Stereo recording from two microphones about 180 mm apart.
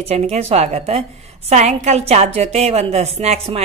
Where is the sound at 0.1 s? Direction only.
35° right (ahead or behind).